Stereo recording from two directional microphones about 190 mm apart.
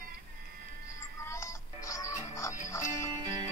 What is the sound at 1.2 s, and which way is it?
Music, 15° left (ahead or behind).